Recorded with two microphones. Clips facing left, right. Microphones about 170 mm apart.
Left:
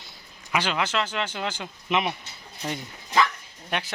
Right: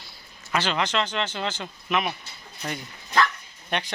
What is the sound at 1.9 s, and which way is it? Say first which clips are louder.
Speech: left 1 dB; 25° left (ahead or behind).